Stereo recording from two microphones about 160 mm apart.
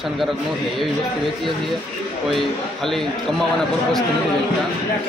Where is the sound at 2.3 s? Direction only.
Centre (ahead or behind).